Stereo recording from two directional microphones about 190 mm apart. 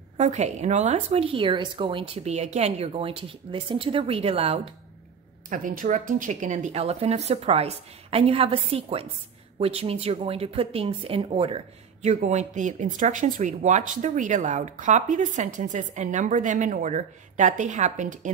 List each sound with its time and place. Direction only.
0.2 s speech: 35° right (ahead or behind)
5.5 s speech: 45° right (ahead or behind)